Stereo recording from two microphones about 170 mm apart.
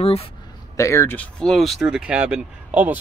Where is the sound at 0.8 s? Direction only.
15° left (ahead or behind).